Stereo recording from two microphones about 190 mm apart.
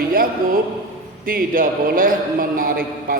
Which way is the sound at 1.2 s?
50° right (ahead or behind).